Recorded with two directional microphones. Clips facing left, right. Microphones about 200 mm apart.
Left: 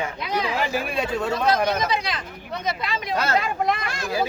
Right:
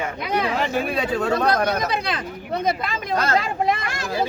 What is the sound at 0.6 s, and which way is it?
Speech, centre (ahead or behind).